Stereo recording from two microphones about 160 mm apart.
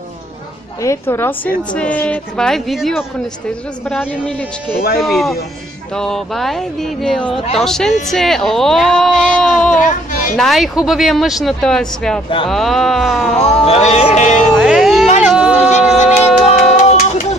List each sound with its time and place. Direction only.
0.8 s a woman's voice: 15° left (ahead or behind); by 3.1 s centre (ahead or behind)
5.0 s speech: centre (ahead or behind)
9.8 s speech: 55° left (ahead or behind)
10.3 s speech: centre (ahead or behind)
13.4 s speech: 40° left (ahead or behind)
14.5 s speech: centre (ahead or behind)
15.2 s a sound: 5° right (ahead or behind)
15.5 s a sound: 45° left (ahead or behind)